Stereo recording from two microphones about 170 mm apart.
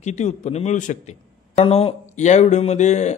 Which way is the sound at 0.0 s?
40° left (ahead or behind).